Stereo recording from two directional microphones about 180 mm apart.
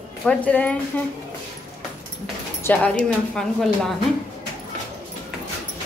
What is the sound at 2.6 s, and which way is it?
Speech, 10° left (ahead or behind).